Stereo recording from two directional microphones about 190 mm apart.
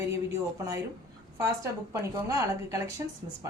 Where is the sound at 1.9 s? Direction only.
15° right (ahead or behind).